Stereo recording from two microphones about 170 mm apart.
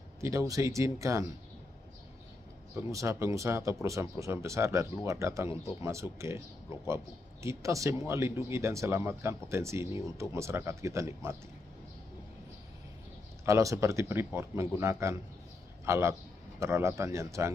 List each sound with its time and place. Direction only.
0.2 s speech: 15° right (ahead or behind)
2.7 s speech: 15° right (ahead or behind)
13.5 s a man's voice: 20° right (ahead or behind)